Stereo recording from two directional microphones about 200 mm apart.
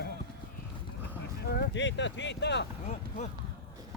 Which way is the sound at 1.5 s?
65° left (ahead or behind).